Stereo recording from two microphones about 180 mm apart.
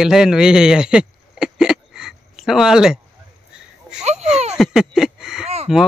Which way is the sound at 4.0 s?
40° right (ahead or behind).